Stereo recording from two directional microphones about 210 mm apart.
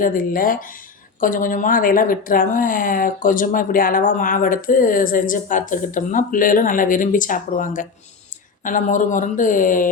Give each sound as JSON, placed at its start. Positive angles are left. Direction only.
{"t": 0.0, "sound": "a woman's voice", "side_deg": 40}